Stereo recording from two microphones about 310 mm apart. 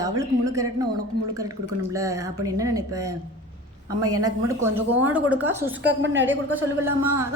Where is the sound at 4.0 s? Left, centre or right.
Right.